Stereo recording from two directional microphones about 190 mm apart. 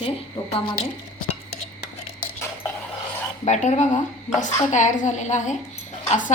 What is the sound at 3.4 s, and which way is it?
A woman's voice, 40° left (ahead or behind).